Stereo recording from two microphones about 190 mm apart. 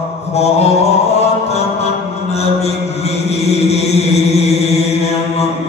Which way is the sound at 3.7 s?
35° left (ahead or behind).